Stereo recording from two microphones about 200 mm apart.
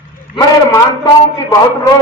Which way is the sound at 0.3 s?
15° left (ahead or behind).